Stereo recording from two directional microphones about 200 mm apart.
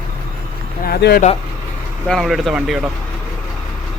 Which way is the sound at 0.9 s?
50° left (ahead or behind).